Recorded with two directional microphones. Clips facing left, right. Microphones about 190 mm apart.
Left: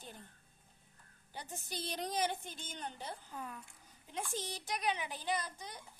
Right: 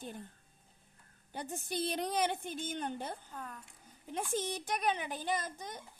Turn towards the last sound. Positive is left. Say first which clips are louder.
# right 2 dB
turn(degrees=-50)  # may be behind; listen again after turning